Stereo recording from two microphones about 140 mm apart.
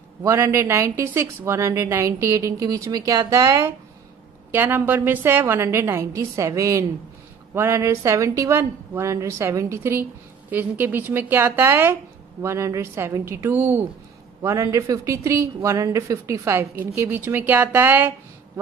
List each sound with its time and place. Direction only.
0.2 s a woman's voice: 20° right (ahead or behind)